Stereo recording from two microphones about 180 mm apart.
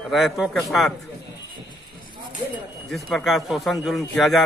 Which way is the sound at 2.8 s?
Centre (ahead or behind).